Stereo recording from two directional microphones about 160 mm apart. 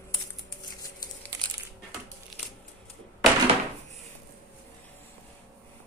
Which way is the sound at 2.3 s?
Centre (ahead or behind).